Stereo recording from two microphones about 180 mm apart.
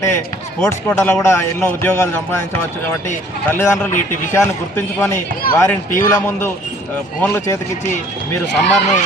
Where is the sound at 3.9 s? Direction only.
45° left (ahead or behind).